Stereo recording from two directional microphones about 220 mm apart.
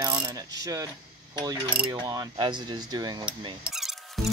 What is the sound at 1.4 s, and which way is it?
Speech, 20° right (ahead or behind).